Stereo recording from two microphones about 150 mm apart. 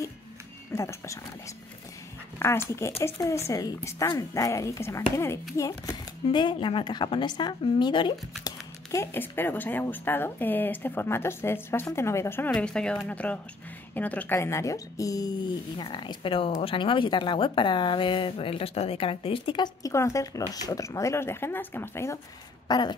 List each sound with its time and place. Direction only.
0.7 s speech: 20° left (ahead or behind)
2.3 s a woman's voice: 15° left (ahead or behind); by 8.1 s 35° left (ahead or behind)
8.5 s speech: 20° left (ahead or behind)
12.4 s a woman's voice: 5° left (ahead or behind)
22.7 s speech: 30° left (ahead or behind)